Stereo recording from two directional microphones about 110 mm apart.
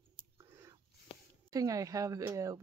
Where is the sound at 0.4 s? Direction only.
30° right (ahead or behind).